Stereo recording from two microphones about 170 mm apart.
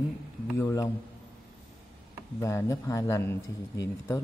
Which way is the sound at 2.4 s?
20° left (ahead or behind).